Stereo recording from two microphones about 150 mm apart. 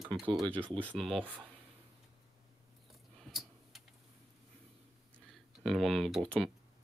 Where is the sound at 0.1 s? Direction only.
35° right (ahead or behind).